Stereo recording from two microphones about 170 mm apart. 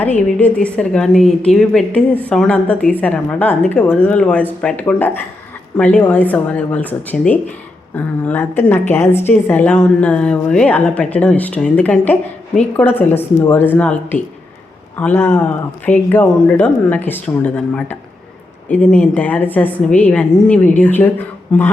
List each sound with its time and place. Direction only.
0.0 s a woman's voice: 10° left (ahead or behind)